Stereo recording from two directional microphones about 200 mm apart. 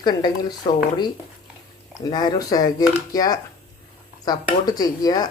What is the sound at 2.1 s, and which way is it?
Speech, 20° left (ahead or behind).